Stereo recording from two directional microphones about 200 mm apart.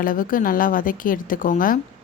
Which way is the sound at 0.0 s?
45° left (ahead or behind).